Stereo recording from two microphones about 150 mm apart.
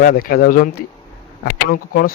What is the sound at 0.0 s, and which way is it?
Speech, 75° left (ahead or behind).